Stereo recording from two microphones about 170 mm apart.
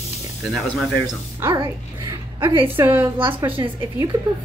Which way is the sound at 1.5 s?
25° right (ahead or behind).